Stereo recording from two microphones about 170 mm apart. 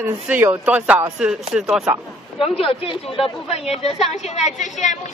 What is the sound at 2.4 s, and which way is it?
A woman's voice, 35° left (ahead or behind).